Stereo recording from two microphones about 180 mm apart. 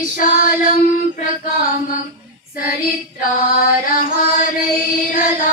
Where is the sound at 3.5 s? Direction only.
50° left (ahead or behind).